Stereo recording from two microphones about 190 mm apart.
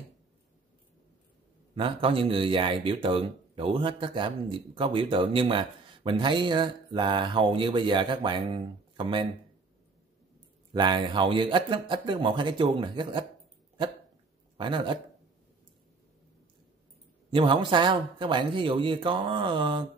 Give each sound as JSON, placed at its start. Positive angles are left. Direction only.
{"t": 1.8, "sound": "speech", "side_deg": -30}
{"t": 10.7, "sound": "speech", "side_deg": -25}
{"t": 14.6, "sound": "speech", "side_deg": -25}
{"t": 17.3, "sound": "speech", "side_deg": -25}